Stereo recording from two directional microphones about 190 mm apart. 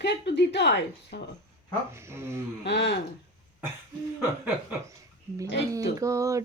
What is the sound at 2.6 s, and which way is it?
Speech, 65° left (ahead or behind).